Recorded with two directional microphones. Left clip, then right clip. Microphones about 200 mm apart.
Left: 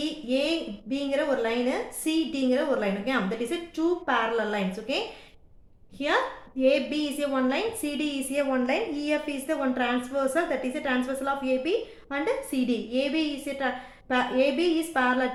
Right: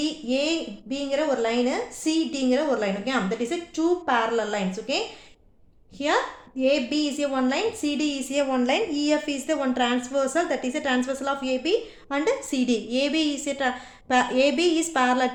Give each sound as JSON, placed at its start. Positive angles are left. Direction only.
{"t": 0.3, "sound": "a woman's voice", "side_deg": -25}
{"t": 6.6, "sound": "a woman's voice", "side_deg": -30}